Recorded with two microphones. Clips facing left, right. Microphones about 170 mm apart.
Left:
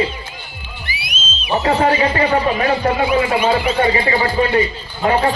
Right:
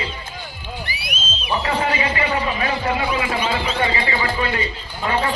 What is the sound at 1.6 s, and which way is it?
Speech, 45° left (ahead or behind).